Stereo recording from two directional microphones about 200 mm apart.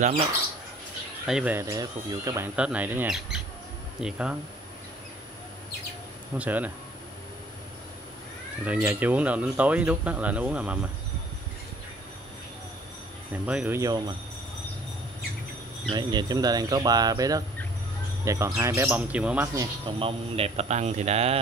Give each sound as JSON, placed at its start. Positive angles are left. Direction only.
{"t": 1.2, "sound": "speech", "side_deg": -5}
{"t": 6.3, "sound": "speech", "side_deg": -5}
{"t": 8.6, "sound": "speech", "side_deg": -5}
{"t": 13.3, "sound": "speech", "side_deg": -5}
{"t": 15.9, "sound": "speech", "side_deg": -20}
{"t": 19.5, "sound": "speech", "side_deg": -20}